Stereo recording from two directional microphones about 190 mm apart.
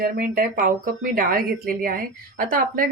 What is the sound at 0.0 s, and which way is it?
Speech, 50° right (ahead or behind).